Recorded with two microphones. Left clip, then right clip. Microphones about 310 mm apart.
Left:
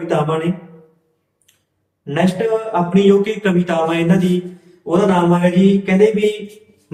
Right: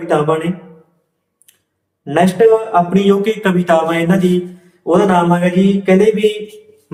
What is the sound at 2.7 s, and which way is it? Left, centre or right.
A man's voice, centre.